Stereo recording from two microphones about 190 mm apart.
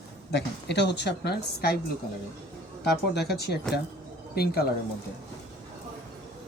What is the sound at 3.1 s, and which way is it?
A woman's voice, 60° left (ahead or behind).